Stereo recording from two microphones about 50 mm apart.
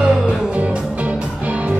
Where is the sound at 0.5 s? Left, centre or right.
Right.